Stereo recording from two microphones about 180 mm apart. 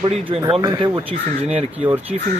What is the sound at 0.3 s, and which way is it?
Speech, 25° right (ahead or behind).